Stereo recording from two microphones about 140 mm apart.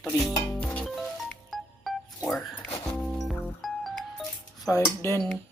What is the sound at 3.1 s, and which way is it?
Music, centre (ahead or behind).